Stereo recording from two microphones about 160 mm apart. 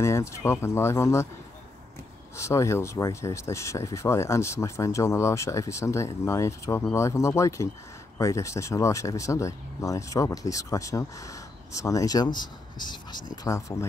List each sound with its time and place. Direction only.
0.0 s speech: 20° left (ahead or behind)
2.3 s speech: 20° left (ahead or behind)